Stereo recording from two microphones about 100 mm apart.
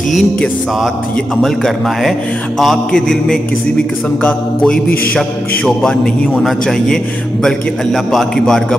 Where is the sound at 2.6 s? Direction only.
5° left (ahead or behind).